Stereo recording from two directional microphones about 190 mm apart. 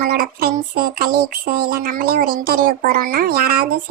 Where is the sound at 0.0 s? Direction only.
50° right (ahead or behind).